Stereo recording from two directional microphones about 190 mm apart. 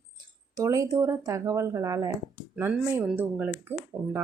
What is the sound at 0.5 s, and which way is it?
Speech, 15° right (ahead or behind).